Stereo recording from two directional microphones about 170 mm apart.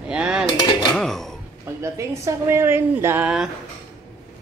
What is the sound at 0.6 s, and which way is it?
Dishes, 25° left (ahead or behind).